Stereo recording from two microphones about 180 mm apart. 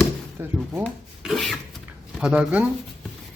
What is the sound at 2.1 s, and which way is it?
Speech, 5° right (ahead or behind).